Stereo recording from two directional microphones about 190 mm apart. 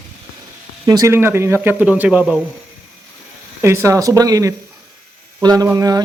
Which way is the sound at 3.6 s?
15° right (ahead or behind).